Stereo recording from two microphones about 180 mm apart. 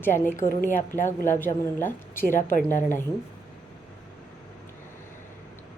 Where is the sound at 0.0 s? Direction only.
10° left (ahead or behind).